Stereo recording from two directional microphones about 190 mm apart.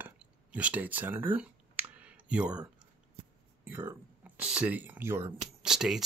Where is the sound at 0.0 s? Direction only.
5° right (ahead or behind).